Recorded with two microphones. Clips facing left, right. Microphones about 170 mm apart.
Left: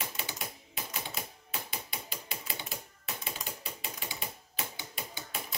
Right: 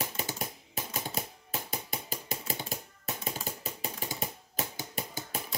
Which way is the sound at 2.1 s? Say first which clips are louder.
Right 5 dB; 45° right (ahead or behind).